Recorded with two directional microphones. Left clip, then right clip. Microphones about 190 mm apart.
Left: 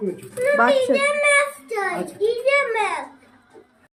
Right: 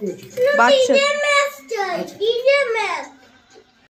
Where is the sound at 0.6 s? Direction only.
10° right (ahead or behind).